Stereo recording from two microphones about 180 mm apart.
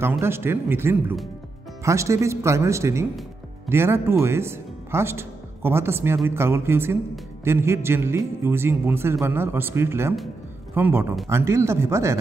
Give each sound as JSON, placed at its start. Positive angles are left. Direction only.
{"t": 0.2, "sound": "a man's voice", "side_deg": -15}